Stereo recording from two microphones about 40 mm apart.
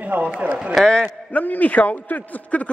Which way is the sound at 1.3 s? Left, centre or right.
Left.